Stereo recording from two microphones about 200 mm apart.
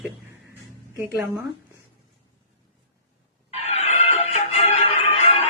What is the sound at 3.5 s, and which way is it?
Music, 35° left (ahead or behind).